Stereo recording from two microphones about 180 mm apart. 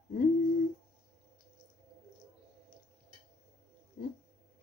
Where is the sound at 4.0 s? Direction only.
55° left (ahead or behind).